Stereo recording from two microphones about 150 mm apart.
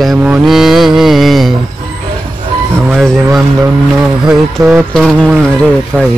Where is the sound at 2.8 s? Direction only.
Centre (ahead or behind).